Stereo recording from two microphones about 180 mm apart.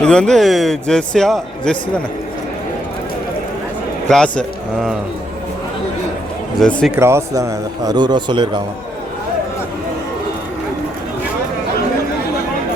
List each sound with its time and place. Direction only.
0.0 s a man's voice: 5° left (ahead or behind)
4.1 s a man's voice: 5° left (ahead or behind)
6.6 s a man's voice: 5° left (ahead or behind)
6.9 s a man's voice: 15° right (ahead or behind)